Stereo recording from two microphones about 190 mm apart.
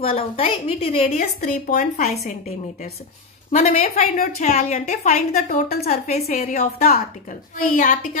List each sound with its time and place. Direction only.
0.4 s a woman's voice: 30° left (ahead or behind)
1.1 s a woman's voice: 45° left (ahead or behind)